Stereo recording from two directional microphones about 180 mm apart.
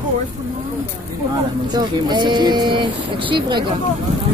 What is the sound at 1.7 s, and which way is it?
Speech, 25° right (ahead or behind).